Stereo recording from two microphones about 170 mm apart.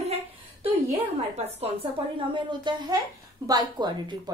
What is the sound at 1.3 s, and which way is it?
A woman's voice, 35° right (ahead or behind).